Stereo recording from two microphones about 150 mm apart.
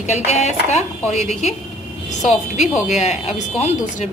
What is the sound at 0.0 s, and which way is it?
Speech, 50° left (ahead or behind).